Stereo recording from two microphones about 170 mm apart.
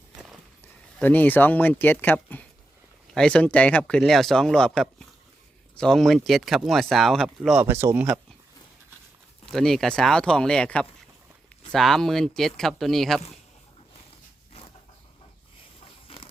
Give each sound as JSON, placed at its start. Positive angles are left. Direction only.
{"t": 0.9, "sound": "speech", "side_deg": 10}
{"t": 7.6, "sound": "speech", "side_deg": -15}
{"t": 9.5, "sound": "speech", "side_deg": 0}
{"t": 16.0, "sound": "a sound", "side_deg": 30}